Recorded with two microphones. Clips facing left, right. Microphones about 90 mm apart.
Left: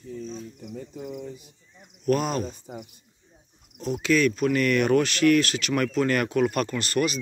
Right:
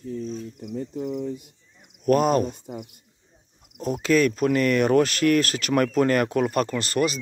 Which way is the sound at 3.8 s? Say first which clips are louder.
Right 2 dB; 45° right (ahead or behind).